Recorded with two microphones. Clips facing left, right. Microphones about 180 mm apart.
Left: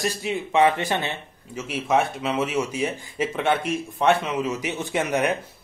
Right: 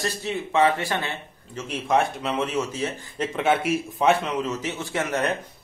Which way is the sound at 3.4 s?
Centre (ahead or behind).